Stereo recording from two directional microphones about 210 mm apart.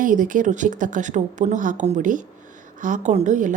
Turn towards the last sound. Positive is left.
turn(degrees=-35)  # may be behind; listen again after turning